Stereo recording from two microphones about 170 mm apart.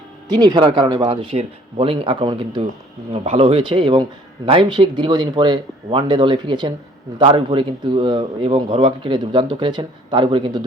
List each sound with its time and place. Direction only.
0.3 s a man's voice: 25° right (ahead or behind)